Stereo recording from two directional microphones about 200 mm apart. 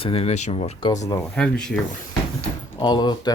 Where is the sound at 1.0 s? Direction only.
15° left (ahead or behind).